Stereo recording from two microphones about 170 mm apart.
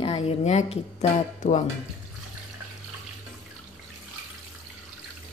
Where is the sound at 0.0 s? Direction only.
35° left (ahead or behind).